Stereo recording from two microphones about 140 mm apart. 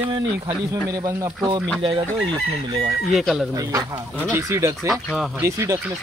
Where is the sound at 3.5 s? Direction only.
25° right (ahead or behind).